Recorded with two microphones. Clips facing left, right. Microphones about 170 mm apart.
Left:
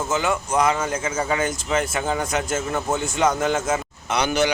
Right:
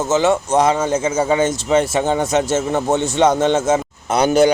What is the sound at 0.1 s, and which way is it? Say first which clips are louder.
A man's voice: right 8 dB; 25° right (ahead or behind).